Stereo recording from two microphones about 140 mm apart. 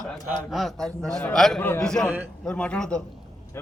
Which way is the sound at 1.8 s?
5° left (ahead or behind).